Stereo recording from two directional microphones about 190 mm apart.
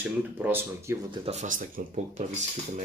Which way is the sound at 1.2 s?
40° right (ahead or behind).